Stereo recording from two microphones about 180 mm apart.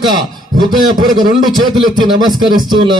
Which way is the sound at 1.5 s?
25° right (ahead or behind).